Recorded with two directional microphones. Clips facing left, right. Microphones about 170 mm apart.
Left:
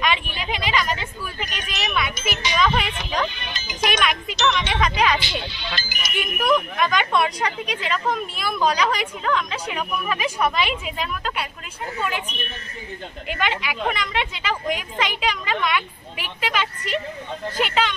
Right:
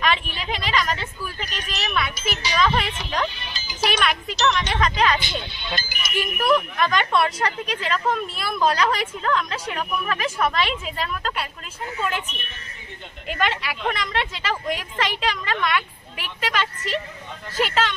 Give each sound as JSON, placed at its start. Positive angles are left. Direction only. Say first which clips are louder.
{"t": 0.0, "sound": "a woman's voice", "louder": "even", "side_deg": 0}
{"t": 1.4, "sound": "a sound", "louder": "left 3 dB", "side_deg": -35}
{"t": 2.1, "sound": "music", "louder": "left 1 dB", "side_deg": -35}
{"t": 2.6, "sound": "a woman's voice", "louder": "even", "side_deg": 5}
{"t": 3.3, "sound": "speech", "louder": "left 1 dB", "side_deg": -35}
{"t": 4.0, "sound": "a woman's voice", "louder": "even", "side_deg": 0}
{"t": 5.2, "sound": "speech", "louder": "left 1 dB", "side_deg": -50}
{"t": 6.1, "sound": "a woman's voice", "louder": "even", "side_deg": 0}